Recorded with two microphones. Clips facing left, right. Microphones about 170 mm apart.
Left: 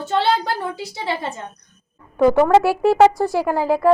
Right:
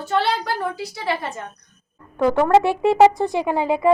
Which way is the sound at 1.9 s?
10° left (ahead or behind).